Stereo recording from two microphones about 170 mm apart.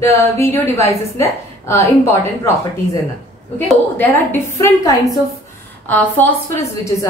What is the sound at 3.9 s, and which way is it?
A woman's voice, 10° left (ahead or behind).